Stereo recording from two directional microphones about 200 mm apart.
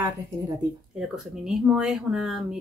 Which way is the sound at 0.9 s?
Centre (ahead or behind).